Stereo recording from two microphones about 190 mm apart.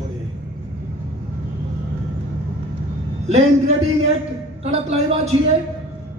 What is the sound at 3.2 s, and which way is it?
A man's voice, 35° right (ahead or behind).